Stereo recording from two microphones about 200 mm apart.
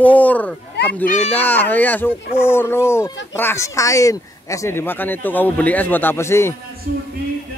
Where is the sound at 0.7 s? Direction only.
60° left (ahead or behind).